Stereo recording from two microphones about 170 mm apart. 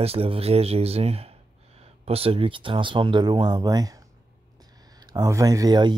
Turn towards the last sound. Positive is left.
turn(degrees=-25)  # may be behind; listen again after turning